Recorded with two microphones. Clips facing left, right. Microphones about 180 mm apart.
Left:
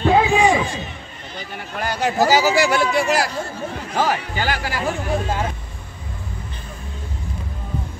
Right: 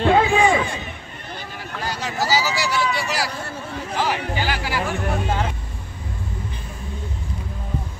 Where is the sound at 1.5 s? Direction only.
60° left (ahead or behind).